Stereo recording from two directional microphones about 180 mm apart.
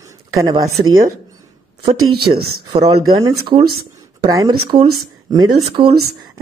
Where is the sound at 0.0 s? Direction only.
15° right (ahead or behind).